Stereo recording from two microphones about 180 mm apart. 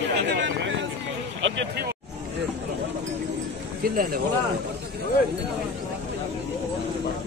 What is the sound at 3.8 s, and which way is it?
Speech, 55° right (ahead or behind).